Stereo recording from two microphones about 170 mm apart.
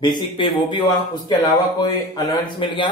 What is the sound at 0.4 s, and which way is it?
Speech, 30° left (ahead or behind).